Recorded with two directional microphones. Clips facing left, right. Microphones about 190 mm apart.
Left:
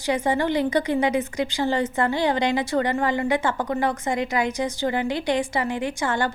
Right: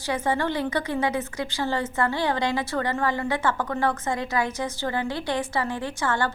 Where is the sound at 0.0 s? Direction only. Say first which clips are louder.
Left 3 dB; 15° left (ahead or behind).